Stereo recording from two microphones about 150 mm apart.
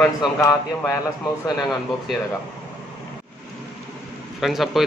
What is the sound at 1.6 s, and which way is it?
Speech, centre (ahead or behind).